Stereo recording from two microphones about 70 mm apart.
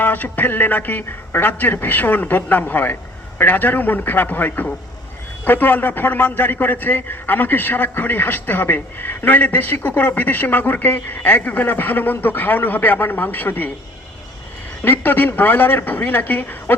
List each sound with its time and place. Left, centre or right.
0.0 s a man's voice: left
14.8 s a man's voice: left